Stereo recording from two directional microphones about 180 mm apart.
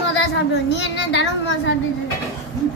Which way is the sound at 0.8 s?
75° left (ahead or behind).